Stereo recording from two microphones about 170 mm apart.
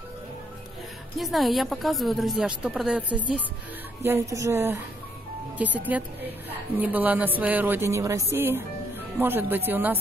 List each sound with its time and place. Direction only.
1.1 s a woman's voice: centre (ahead or behind)